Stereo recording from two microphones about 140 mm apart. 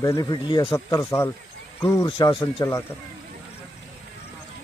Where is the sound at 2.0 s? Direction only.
35° left (ahead or behind).